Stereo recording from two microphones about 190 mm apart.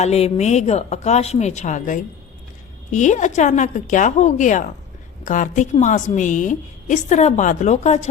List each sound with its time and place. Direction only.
0.0 s a woman's voice: 35° left (ahead or behind)